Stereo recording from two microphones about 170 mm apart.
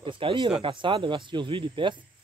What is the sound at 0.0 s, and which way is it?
Speech, 30° right (ahead or behind).